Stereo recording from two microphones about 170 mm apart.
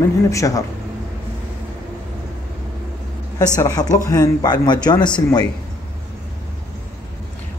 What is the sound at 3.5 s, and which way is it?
Speech, 20° left (ahead or behind).